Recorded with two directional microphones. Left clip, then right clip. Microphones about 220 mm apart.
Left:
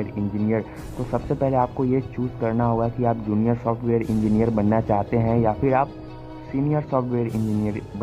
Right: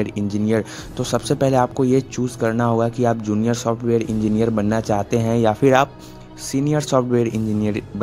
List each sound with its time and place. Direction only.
0.0 s speech: 45° right (ahead or behind)